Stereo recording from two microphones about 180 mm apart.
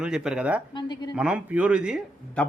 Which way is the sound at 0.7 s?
25° left (ahead or behind).